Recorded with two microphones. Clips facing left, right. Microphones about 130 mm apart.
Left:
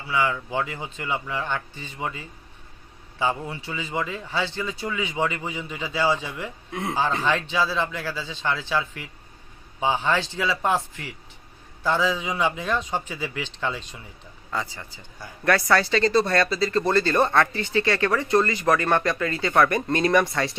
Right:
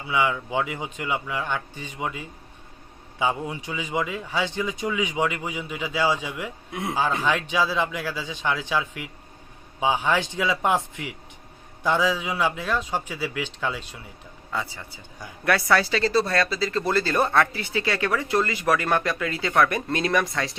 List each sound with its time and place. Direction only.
0.1 s a man's voice: 15° right (ahead or behind)